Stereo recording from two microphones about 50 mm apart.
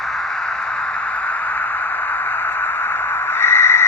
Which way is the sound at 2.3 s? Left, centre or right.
Left.